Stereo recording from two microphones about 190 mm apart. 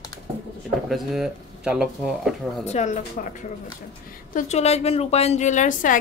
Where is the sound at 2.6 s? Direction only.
35° left (ahead or behind).